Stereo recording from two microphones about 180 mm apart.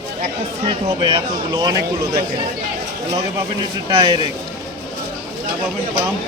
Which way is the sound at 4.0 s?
25° right (ahead or behind).